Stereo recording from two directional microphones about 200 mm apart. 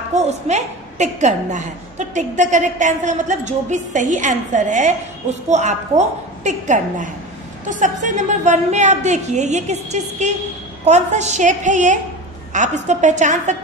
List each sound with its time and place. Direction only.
0.1 s a woman's voice: 35° right (ahead or behind)